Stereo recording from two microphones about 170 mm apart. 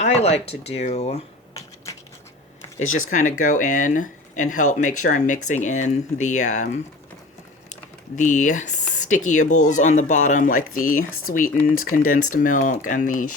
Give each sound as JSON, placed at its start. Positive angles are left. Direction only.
{"t": 0.0, "sound": "speech", "side_deg": 40}
{"t": 1.5, "sound": "typing", "side_deg": 20}
{"t": 2.7, "sound": "speech", "side_deg": 45}
{"t": 8.1, "sound": "speech", "side_deg": 45}